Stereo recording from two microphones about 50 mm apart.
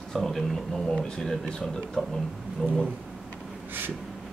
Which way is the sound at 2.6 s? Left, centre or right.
Centre.